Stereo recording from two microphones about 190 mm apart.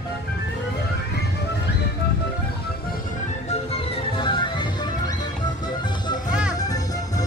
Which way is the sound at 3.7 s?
25° left (ahead or behind).